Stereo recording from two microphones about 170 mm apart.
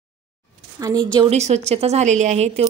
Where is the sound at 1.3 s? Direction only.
40° right (ahead or behind).